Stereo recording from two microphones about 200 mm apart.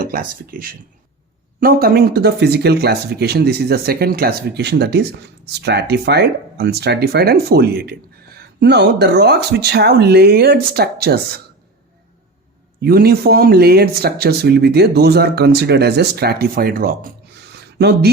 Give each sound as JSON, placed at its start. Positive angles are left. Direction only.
{"t": 0.0, "sound": "speech", "side_deg": -45}
{"t": 12.8, "sound": "speech", "side_deg": -50}
{"t": 17.5, "sound": "a sound", "side_deg": -55}